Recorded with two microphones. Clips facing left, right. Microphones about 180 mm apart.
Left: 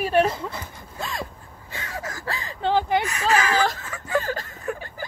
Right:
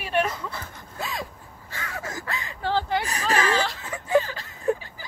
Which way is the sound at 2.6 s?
20° left (ahead or behind).